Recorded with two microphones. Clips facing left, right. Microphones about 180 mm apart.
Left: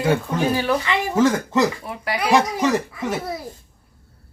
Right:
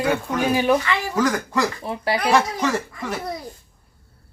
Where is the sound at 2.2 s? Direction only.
15° left (ahead or behind).